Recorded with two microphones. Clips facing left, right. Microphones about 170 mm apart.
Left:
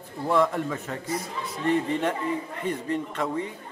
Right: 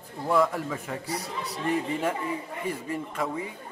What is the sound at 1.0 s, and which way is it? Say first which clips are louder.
Speech: left 2 dB; 35° right (ahead or behind).